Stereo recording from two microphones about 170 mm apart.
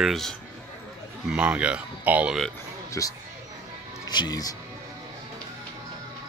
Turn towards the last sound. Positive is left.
turn(degrees=20)  # may be behind; listen again after turning